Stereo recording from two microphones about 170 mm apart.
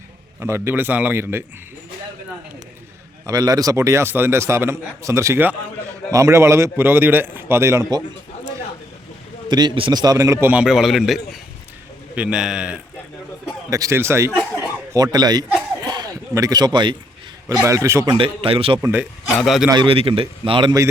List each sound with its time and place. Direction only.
0.3 s a man's voice: 15° right (ahead or behind)
3.2 s a man's voice: 20° right (ahead or behind)
9.5 s a man's voice: 25° right (ahead or behind); by 12.8 s 5° right (ahead or behind)
13.7 s a man's voice: 20° right (ahead or behind)
15.8 s a sound: 25° right (ahead or behind)
17.5 s a man's voice: 20° right (ahead or behind)
18.2 s a man's voice: 35° right (ahead or behind)
18.8 s a man's voice: 10° right (ahead or behind)
19.4 s a man's voice: centre (ahead or behind)
19.7 s a man's voice: 30° right (ahead or behind)